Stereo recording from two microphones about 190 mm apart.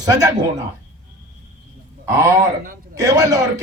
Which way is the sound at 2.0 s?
15° right (ahead or behind).